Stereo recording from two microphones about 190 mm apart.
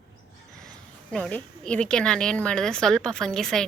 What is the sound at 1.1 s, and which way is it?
A woman's voice, 5° left (ahead or behind).